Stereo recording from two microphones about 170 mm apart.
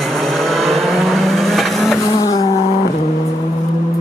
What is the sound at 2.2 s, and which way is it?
Vehicle, 20° left (ahead or behind).